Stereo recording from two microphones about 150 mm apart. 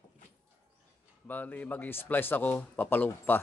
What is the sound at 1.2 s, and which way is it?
A man's voice, 10° left (ahead or behind).